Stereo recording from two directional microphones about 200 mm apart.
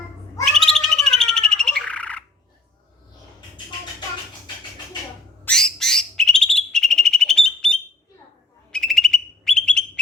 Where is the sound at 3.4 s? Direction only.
20° left (ahead or behind).